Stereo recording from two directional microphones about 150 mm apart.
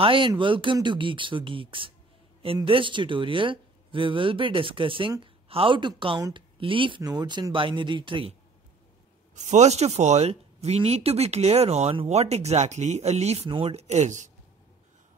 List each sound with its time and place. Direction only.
0.0 s a woman's voice: 35° right (ahead or behind)
9.3 s speech: 50° right (ahead or behind)